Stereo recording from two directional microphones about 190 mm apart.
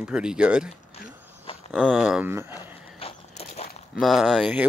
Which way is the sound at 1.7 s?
Centre (ahead or behind).